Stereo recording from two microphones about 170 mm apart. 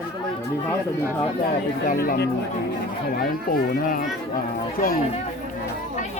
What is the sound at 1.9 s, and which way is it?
Speech, 60° left (ahead or behind).